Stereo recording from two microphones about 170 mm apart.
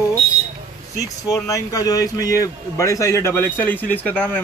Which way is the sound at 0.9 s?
20° left (ahead or behind).